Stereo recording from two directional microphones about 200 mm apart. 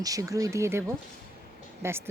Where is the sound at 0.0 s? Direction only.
15° right (ahead or behind).